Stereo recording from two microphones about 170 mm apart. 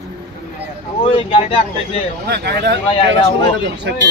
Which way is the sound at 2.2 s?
75° right (ahead or behind).